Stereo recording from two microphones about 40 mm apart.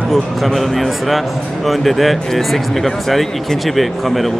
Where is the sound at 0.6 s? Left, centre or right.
Centre.